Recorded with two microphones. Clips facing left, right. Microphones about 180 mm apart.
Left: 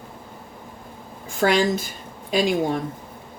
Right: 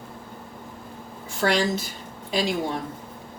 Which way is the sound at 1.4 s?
50° left (ahead or behind).